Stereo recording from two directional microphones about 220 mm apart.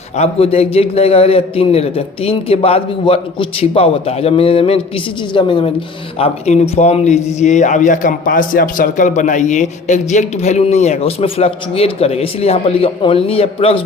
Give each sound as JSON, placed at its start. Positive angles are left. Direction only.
{"t": 0.2, "sound": "a man's voice", "side_deg": 25}